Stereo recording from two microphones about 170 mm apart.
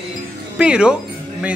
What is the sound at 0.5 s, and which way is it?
Music, 5° right (ahead or behind).